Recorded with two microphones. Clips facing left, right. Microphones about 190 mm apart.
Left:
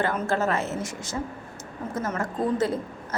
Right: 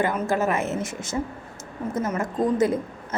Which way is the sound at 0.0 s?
15° right (ahead or behind).